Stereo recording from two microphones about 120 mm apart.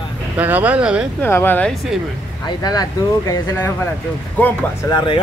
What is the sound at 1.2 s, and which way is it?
Speech, 15° left (ahead or behind).